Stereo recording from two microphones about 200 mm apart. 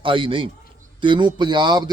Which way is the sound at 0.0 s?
25° right (ahead or behind).